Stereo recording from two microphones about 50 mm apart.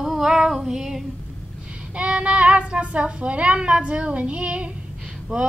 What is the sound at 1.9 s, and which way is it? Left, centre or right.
Speech, right.